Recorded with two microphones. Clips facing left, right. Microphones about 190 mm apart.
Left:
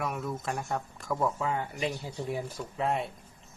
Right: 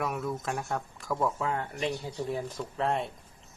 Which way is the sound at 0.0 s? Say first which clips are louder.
Right 1 dB; centre (ahead or behind).